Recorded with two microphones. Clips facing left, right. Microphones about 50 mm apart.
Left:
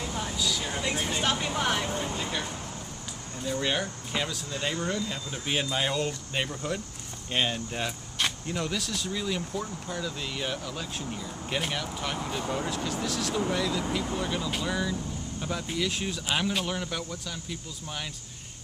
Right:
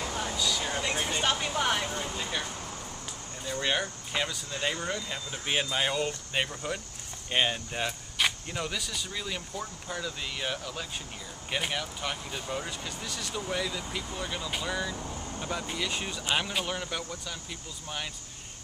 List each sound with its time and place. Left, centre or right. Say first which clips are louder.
0.1 s vehicle: left 1 dB; centre
3.4 s speech: left 1 dB; centre
15.0 s vehicle: left 1 dB; right
15.4 s speech: left 3 dB; centre